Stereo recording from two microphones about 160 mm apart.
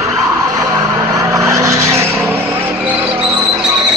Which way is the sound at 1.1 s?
20° right (ahead or behind).